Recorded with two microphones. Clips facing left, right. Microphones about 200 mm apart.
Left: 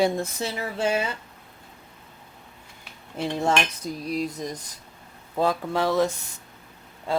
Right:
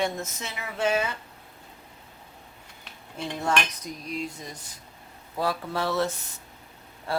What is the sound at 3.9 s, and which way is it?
Speech, 35° left (ahead or behind).